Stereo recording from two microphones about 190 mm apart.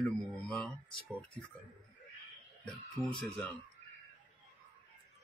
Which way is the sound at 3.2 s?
5° left (ahead or behind).